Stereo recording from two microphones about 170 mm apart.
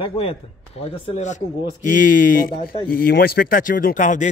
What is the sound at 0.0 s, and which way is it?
Speech, 35° left (ahead or behind).